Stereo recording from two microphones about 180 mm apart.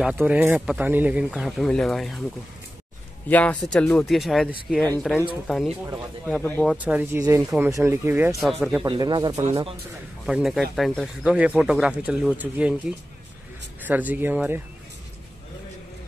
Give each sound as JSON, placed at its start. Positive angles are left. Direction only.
{"t": 0.0, "sound": "speech", "side_deg": -10}
{"t": 3.3, "sound": "speech", "side_deg": 10}
{"t": 6.2, "sound": "speech", "side_deg": 10}
{"t": 6.7, "sound": "speech", "side_deg": -10}
{"t": 8.4, "sound": "speech", "side_deg": 0}
{"t": 8.8, "sound": "speech", "side_deg": -25}
{"t": 10.2, "sound": "speech", "side_deg": 0}